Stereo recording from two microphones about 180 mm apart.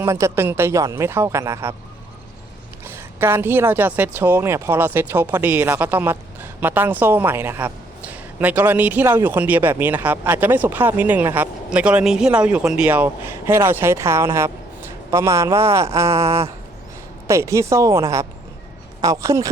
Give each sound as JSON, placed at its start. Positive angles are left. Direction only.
{"t": 0.0, "sound": "speech", "side_deg": -15}
{"t": 2.8, "sound": "speech", "side_deg": -15}